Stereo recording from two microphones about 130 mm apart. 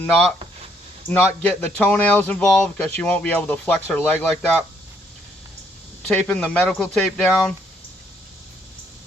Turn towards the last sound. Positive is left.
turn(degrees=5)  # may be behind; listen again after turning